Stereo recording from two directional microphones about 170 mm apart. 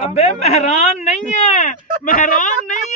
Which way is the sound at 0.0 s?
40° left (ahead or behind).